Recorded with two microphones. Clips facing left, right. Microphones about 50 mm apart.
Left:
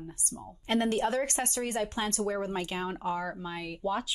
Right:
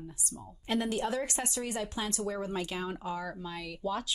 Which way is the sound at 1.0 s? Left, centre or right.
Left.